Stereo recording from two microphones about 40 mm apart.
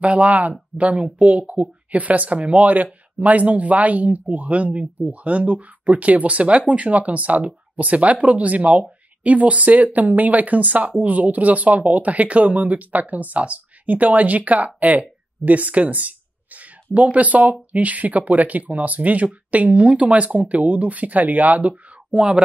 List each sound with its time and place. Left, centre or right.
0.0 s speech: right